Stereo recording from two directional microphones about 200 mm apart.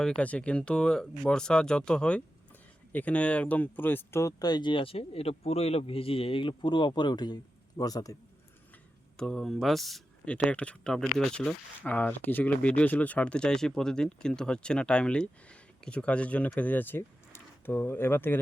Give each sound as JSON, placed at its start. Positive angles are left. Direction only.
{"t": 0.0, "sound": "speech", "side_deg": 5}
{"t": 9.1, "sound": "speech", "side_deg": 5}